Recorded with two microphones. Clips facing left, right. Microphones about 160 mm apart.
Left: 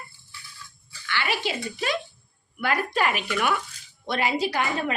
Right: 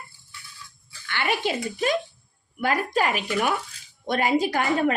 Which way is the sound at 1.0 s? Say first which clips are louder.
Right 2 dB; 50° right (ahead or behind).